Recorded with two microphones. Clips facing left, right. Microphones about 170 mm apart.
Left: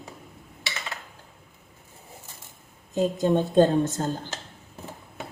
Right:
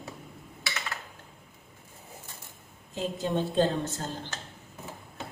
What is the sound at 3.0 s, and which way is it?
A woman's voice, 45° left (ahead or behind).